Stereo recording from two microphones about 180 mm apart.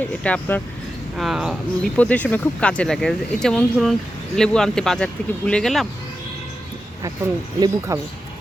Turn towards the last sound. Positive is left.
turn(degrees=-25)  # may be behind; listen again after turning